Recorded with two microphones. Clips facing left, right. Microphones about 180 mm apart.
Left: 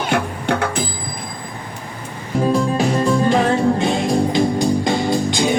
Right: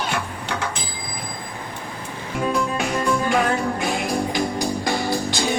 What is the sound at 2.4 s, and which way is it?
Music, 35° left (ahead or behind).